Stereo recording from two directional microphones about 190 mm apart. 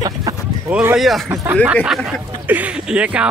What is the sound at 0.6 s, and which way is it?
Speech, 10° right (ahead or behind).